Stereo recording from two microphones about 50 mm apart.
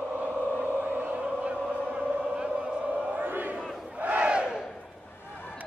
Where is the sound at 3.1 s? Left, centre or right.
Right; by 4.6 s centre.